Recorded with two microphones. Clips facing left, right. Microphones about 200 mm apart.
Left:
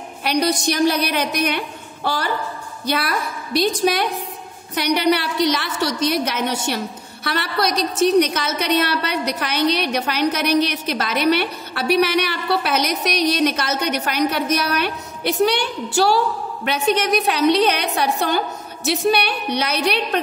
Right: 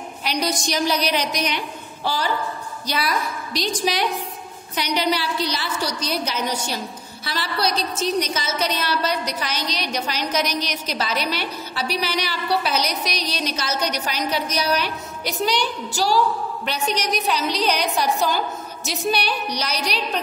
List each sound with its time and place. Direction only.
0.2 s a woman's voice: 55° left (ahead or behind)